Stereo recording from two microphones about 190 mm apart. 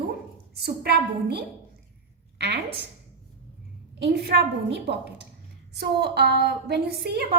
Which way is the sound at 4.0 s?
60° right (ahead or behind).